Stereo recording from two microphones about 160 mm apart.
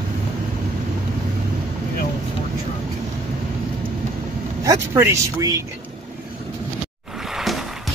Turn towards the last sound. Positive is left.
turn(degrees=0)  # may be behind; listen again after turning